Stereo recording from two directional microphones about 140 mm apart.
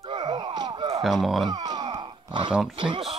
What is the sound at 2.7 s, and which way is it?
Speech, 35° right (ahead or behind).